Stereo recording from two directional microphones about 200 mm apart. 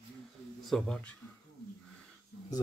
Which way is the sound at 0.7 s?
5° left (ahead or behind).